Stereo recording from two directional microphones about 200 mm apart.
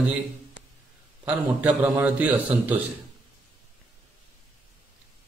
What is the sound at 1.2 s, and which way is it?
A man's voice, 10° right (ahead or behind).